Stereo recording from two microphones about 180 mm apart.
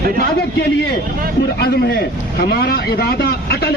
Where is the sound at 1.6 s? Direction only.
65° left (ahead or behind).